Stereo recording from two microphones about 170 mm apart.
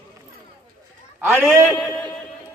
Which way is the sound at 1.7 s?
15° left (ahead or behind).